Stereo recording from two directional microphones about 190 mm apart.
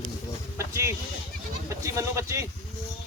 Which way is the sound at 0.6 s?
15° right (ahead or behind).